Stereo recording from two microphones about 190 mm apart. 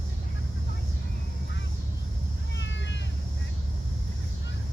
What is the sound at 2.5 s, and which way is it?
Cat, 70° left (ahead or behind).